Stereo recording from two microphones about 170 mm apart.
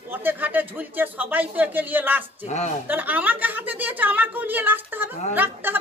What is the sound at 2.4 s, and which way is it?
Speech, 45° left (ahead or behind).